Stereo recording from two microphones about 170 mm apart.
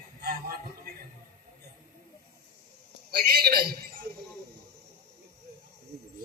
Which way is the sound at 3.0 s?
65° right (ahead or behind).